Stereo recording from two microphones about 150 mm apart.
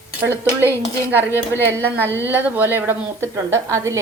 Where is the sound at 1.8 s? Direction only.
15° left (ahead or behind).